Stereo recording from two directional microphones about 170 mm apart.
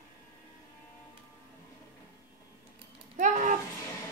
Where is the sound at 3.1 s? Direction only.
45° right (ahead or behind).